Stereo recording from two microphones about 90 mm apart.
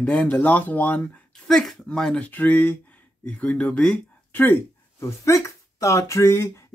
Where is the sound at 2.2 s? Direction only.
20° left (ahead or behind).